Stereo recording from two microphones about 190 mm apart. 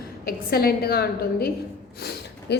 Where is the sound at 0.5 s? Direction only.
55° left (ahead or behind).